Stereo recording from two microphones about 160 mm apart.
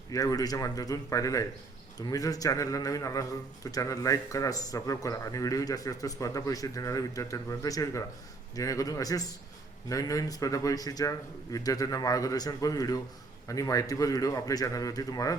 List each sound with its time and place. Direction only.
0.1 s a man's voice: 20° left (ahead or behind)